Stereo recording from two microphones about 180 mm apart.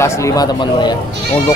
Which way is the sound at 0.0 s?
15° left (ahead or behind).